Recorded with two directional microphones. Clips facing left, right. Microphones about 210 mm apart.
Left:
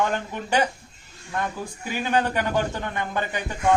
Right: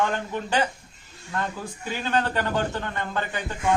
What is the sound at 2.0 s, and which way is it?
A man's voice, 15° left (ahead or behind).